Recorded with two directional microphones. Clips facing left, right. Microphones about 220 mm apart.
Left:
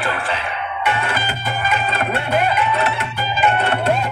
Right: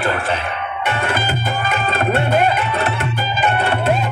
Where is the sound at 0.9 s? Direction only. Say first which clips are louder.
Right 3 dB; 50° right (ahead or behind).